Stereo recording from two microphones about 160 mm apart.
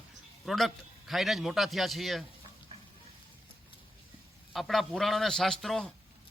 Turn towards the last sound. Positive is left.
turn(degrees=0)  # may be behind; listen again after turning